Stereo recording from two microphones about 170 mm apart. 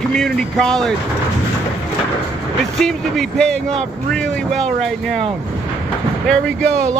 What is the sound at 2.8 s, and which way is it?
Speech, 5° left (ahead or behind).